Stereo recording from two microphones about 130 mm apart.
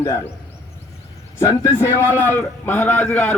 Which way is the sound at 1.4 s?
20° left (ahead or behind).